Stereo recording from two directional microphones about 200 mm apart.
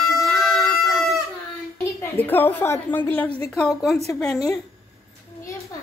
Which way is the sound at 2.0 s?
10° left (ahead or behind).